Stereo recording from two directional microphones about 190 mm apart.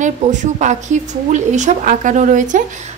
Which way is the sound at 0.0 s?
40° right (ahead or behind).